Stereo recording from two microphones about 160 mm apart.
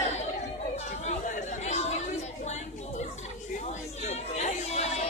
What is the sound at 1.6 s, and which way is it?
Chatter, 45° left (ahead or behind).